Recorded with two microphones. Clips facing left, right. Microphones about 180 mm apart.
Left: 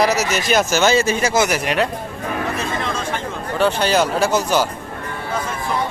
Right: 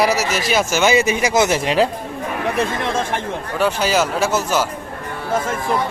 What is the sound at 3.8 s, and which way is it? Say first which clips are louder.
Speech: left 1 dB; 5° right (ahead or behind).